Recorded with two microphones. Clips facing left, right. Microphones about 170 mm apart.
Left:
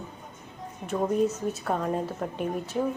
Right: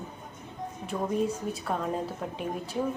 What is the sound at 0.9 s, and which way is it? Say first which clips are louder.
A woman's voice: left 4 dB; 5° left (ahead or behind).